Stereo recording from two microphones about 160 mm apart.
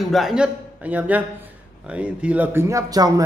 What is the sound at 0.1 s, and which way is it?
A man's voice, 5° right (ahead or behind).